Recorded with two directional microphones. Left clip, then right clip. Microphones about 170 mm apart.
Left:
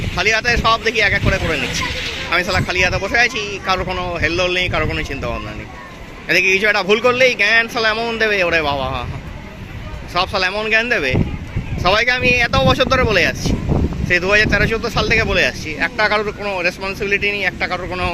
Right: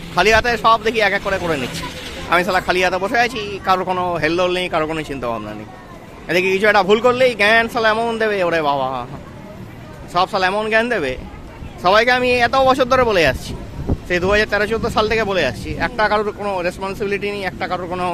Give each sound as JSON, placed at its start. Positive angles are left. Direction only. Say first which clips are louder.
{"t": 0.2, "sound": "speech", "louder": "right 2 dB", "side_deg": -30}
{"t": 10.2, "sound": "speech", "louder": "right 1 dB", "side_deg": -20}